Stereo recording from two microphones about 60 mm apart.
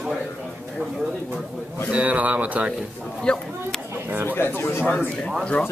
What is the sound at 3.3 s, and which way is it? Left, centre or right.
Speech, centre.